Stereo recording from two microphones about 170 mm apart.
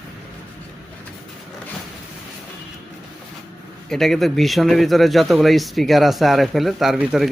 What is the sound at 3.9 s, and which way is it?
Speech, centre (ahead or behind).